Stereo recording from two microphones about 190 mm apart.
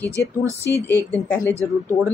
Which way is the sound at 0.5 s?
15° right (ahead or behind).